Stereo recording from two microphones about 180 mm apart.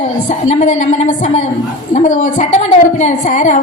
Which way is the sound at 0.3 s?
40° left (ahead or behind).